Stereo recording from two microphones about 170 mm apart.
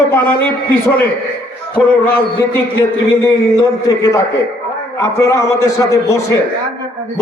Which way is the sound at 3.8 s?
20° left (ahead or behind).